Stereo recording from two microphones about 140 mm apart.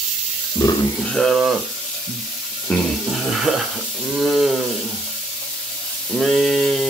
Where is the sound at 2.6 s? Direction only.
Centre (ahead or behind).